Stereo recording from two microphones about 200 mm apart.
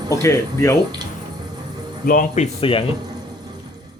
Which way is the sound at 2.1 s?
40° left (ahead or behind).